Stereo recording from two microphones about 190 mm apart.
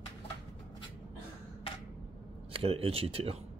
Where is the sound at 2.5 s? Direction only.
30° right (ahead or behind).